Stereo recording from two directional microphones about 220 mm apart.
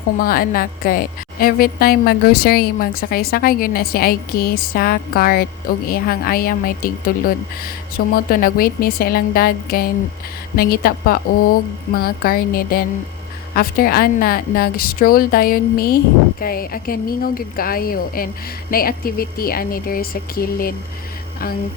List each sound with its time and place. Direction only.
0.2 s a woman's voice: 40° left (ahead or behind)